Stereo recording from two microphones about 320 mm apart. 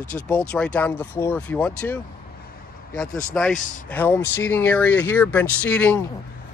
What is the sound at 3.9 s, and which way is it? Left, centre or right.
Speech, centre.